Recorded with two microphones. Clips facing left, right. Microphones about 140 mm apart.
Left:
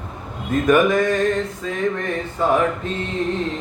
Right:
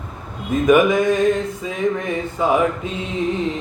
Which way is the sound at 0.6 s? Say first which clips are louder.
Right 2 dB; 5° right (ahead or behind).